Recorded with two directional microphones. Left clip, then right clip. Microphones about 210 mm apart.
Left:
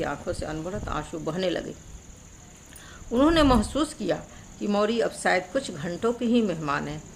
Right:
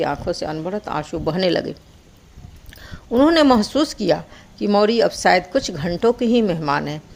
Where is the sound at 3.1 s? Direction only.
25° right (ahead or behind).